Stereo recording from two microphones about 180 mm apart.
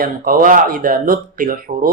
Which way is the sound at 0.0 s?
50° right (ahead or behind).